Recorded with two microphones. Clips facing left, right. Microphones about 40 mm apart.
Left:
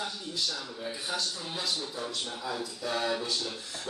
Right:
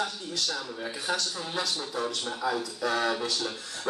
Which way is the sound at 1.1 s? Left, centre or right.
Right.